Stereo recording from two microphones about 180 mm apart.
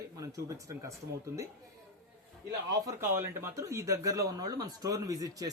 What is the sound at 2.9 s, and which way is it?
Speech, 15° right (ahead or behind).